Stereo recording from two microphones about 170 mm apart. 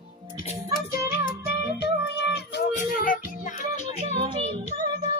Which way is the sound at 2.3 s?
85° left.